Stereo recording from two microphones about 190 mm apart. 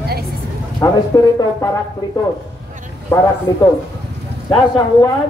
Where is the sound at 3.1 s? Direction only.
10° left (ahead or behind).